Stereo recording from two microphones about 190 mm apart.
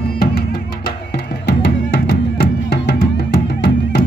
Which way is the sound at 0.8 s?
60° left (ahead or behind).